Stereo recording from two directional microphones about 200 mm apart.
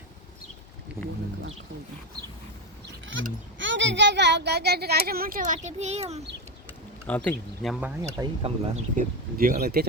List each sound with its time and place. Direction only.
1.0 s speech: 10° right (ahead or behind)
3.6 s a child's voice: 65° right (ahead or behind); by 6.2 s 30° right (ahead or behind)
7.1 s speech: 5° left (ahead or behind)
8.2 s a child's voice: 30° right (ahead or behind); by 9.8 s 50° right (ahead or behind)